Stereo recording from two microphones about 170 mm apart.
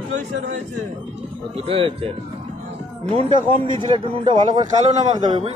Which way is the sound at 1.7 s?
30° right (ahead or behind).